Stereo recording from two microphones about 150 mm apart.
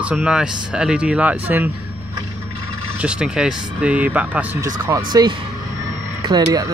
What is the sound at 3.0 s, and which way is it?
Speech, 5° right (ahead or behind).